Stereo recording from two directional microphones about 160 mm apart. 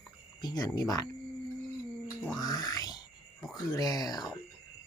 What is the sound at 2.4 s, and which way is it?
Grunt, 25° left (ahead or behind).